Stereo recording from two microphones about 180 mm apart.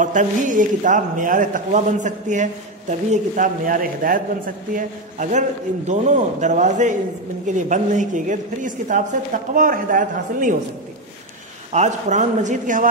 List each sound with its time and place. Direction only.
0.0 s a man's voice: 45° right (ahead or behind)
11.7 s a man's voice: 40° right (ahead or behind)